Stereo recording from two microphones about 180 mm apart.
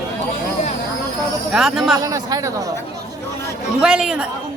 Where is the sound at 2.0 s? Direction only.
20° right (ahead or behind).